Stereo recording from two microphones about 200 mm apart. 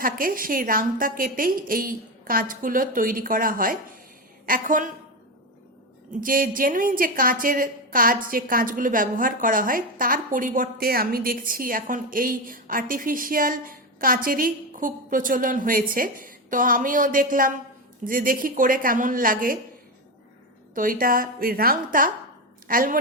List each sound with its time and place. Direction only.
0.0 s a woman's voice: 45° right (ahead or behind)
6.2 s a woman's voice: 45° right (ahead or behind)
20.7 s a woman's voice: 45° right (ahead or behind)